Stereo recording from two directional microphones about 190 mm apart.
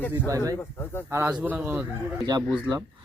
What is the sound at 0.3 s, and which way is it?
Speech, 15° right (ahead or behind).